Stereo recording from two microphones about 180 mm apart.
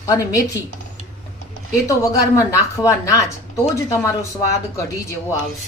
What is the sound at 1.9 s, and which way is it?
A woman's voice, 20° left (ahead or behind).